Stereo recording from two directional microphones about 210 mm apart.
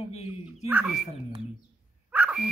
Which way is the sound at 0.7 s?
5° right (ahead or behind).